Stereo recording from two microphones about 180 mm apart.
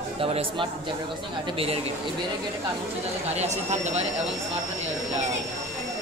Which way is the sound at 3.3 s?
40° right (ahead or behind).